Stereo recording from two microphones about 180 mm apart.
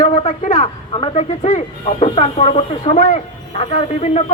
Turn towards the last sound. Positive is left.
turn(degrees=35)  # may be behind; listen again after turning